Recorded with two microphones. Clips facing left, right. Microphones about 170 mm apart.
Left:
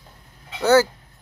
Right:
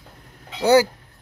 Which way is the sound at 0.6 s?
15° right (ahead or behind).